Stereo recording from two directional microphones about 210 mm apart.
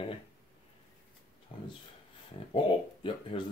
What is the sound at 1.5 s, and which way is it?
Speech, 25° left (ahead or behind).